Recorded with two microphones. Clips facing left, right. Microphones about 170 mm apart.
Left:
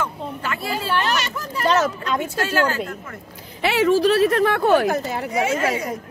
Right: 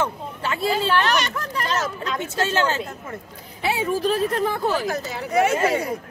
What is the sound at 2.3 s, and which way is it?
Speech, 25° right (ahead or behind).